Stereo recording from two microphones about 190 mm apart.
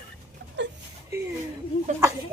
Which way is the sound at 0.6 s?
70° right (ahead or behind).